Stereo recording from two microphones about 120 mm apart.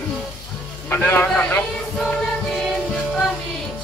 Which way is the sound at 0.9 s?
15° left (ahead or behind).